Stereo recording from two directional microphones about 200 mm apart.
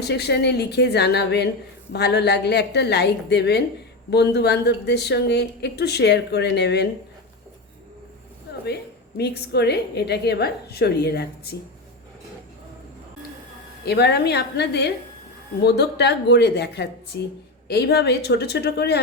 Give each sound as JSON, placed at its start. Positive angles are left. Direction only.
{"t": 0.0, "sound": "a woman's voice", "side_deg": 55}
{"t": 8.6, "sound": "a woman's voice", "side_deg": 55}
{"t": 13.8, "sound": "a woman's voice", "side_deg": 55}